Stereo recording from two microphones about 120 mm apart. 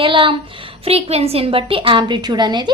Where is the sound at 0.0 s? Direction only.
45° right (ahead or behind).